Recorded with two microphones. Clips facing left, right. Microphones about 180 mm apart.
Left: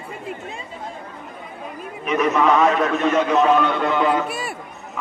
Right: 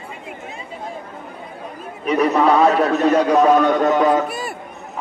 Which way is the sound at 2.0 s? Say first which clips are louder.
Right 2 dB; 35° right (ahead or behind).